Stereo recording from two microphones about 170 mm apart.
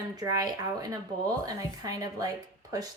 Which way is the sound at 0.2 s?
20° right (ahead or behind).